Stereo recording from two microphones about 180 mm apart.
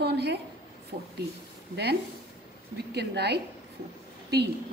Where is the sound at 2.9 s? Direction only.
65° right (ahead or behind).